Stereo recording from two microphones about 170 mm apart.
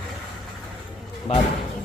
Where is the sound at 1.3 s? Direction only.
40° left (ahead or behind).